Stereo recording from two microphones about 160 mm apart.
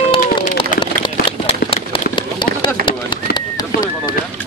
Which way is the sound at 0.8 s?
30° left (ahead or behind).